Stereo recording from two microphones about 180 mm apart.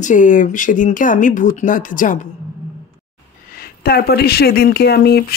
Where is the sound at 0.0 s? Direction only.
45° left (ahead or behind).